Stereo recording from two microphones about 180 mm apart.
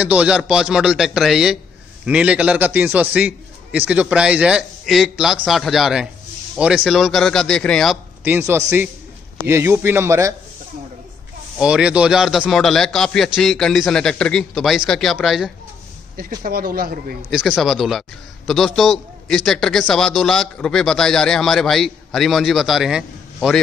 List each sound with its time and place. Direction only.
0.0 s a man's voice: 5° right (ahead or behind)
8.2 s a man's voice: 10° right (ahead or behind)
11.5 s a man's voice: 5° right (ahead or behind)
16.2 s speech: 55° right (ahead or behind)
17.3 s a man's voice: centre (ahead or behind)